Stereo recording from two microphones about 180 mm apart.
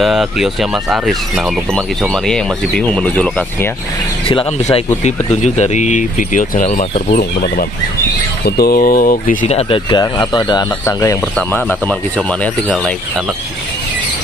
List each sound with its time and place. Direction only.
0.0 s speech: centre (ahead or behind)
2.2 s speech: 5° left (ahead or behind)
5.0 s speech: 40° left (ahead or behind)
8.5 s speech: 60° left (ahead or behind)
9.5 s speech: 30° left (ahead or behind)
11.3 s speech: 5° left (ahead or behind)